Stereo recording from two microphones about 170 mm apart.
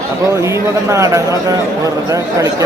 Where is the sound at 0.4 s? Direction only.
15° right (ahead or behind).